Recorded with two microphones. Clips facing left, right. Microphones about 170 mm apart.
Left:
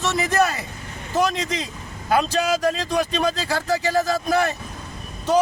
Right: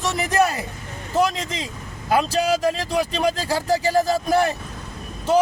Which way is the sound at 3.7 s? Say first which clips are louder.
Right 2 dB; 35° right (ahead or behind).